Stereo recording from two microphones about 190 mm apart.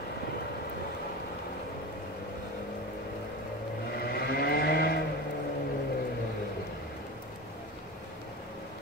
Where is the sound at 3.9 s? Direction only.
55° left (ahead or behind).